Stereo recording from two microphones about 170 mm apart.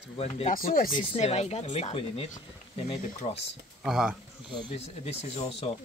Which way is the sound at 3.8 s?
5° right (ahead or behind).